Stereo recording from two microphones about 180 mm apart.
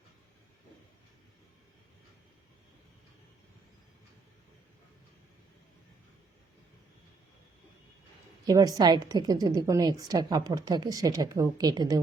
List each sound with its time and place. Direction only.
8.4 s a woman's voice: 20° right (ahead or behind)